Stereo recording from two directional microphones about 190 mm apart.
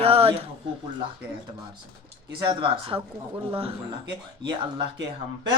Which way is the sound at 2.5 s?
25° right (ahead or behind).